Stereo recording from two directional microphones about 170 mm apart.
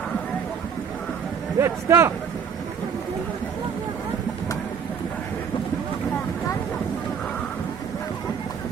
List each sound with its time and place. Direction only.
1.5 s a man's voice: 15° right (ahead or behind)